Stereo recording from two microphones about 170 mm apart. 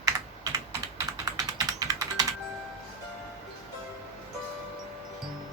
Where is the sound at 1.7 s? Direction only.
20° right (ahead or behind).